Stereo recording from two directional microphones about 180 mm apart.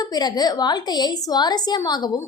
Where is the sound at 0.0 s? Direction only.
20° left (ahead or behind).